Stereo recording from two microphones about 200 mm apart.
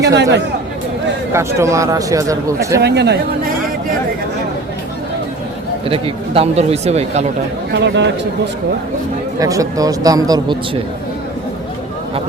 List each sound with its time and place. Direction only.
0.0 s speech: 60° right (ahead or behind)
1.3 s speech: 15° right (ahead or behind)
2.8 s speech: 55° right (ahead or behind)
5.9 s speech: 30° right (ahead or behind)
7.7 s speech: 60° right (ahead or behind)
9.4 s speech: 15° right (ahead or behind)